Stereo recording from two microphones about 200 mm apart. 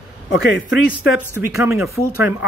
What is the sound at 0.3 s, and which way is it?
Speech, 65° left (ahead or behind).